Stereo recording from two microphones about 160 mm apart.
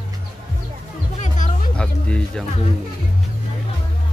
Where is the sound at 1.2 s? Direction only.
55° left (ahead or behind).